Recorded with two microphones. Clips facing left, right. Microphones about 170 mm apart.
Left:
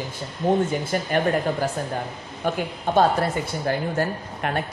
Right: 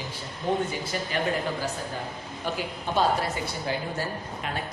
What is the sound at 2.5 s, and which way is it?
A woman's voice, 50° left (ahead or behind).